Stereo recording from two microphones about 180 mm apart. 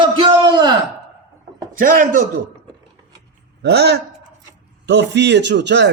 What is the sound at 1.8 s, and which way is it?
Speech, 50° right (ahead or behind).